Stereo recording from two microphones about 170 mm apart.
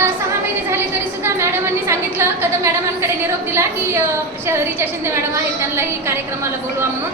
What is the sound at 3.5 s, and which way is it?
A woman's voice, 15° right (ahead or behind).